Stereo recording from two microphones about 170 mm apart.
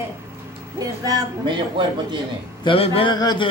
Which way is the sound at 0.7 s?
20° right (ahead or behind).